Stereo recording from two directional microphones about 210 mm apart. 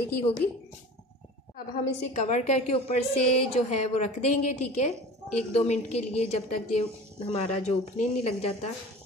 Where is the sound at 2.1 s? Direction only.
35° left (ahead or behind).